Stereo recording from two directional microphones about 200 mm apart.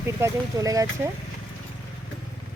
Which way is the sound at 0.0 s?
15° right (ahead or behind).